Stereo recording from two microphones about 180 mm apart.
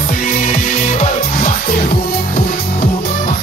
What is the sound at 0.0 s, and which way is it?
Music, 55° left (ahead or behind).